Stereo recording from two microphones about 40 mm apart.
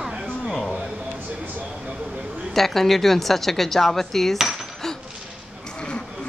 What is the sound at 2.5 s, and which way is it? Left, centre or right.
A woman's voice, centre.